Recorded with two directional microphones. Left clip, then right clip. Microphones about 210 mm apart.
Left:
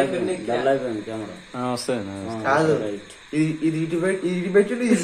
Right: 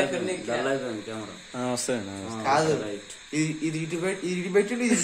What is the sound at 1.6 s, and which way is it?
Speech, 20° right (ahead or behind).